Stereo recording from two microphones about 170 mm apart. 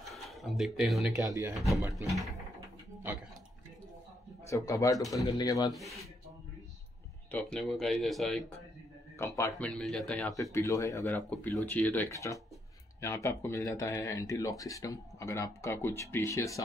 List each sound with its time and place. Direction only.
0.0 s a sound: centre (ahead or behind)
1.1 s speech: 20° right (ahead or behind)
4.5 s speech: 15° left (ahead or behind)
5.7 s speech: centre (ahead or behind)
7.2 s speech: 5° left (ahead or behind)
9.2 s speech: 15° left (ahead or behind)
9.6 s speech: 5° left (ahead or behind)
10.3 s speech: 20° left (ahead or behind)